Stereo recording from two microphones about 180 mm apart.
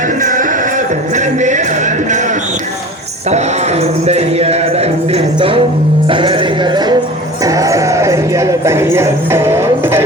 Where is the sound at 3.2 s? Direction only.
40° right (ahead or behind).